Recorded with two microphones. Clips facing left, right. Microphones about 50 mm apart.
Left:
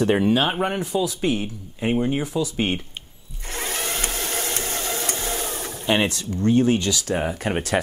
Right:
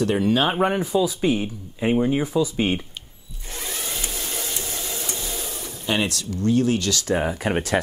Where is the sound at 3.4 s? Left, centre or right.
Left.